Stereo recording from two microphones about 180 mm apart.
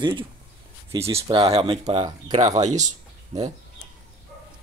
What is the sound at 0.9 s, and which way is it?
Speech, 15° right (ahead or behind).